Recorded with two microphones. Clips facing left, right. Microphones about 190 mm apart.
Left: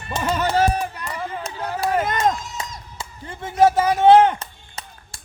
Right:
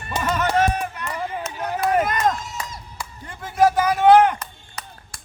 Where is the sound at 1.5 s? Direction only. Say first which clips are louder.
Right 1 dB; 15° right (ahead or behind).